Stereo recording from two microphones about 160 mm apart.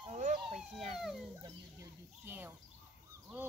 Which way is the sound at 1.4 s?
15° right (ahead or behind).